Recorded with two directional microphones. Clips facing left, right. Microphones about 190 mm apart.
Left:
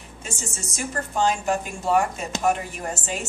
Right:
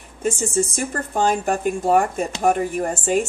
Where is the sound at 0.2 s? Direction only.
55° right (ahead or behind).